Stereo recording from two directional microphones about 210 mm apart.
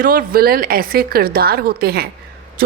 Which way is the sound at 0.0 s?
40° right (ahead or behind).